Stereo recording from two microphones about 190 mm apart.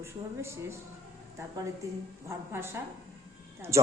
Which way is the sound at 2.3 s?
15° right (ahead or behind).